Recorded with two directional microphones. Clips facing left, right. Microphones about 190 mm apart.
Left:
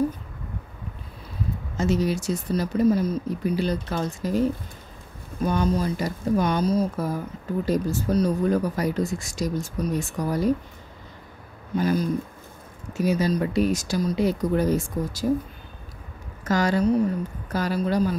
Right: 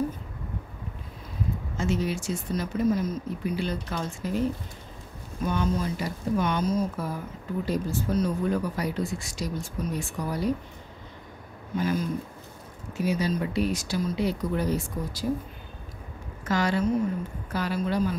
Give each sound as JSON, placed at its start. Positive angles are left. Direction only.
{"t": 1.8, "sound": "speech", "side_deg": 40}
{"t": 11.8, "sound": "speech", "side_deg": 35}
{"t": 16.4, "sound": "speech", "side_deg": 40}